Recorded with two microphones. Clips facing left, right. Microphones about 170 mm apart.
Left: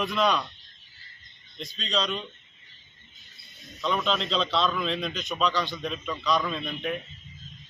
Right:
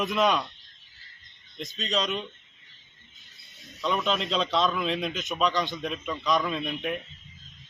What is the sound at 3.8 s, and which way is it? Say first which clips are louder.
A man's voice: even; 5° right (ahead or behind).